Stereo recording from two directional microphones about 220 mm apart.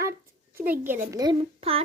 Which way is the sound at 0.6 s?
10° right (ahead or behind).